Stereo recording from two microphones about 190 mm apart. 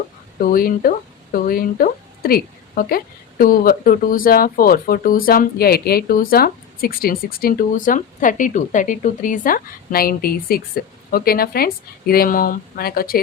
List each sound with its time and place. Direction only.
0.3 s speech: 50° left (ahead or behind)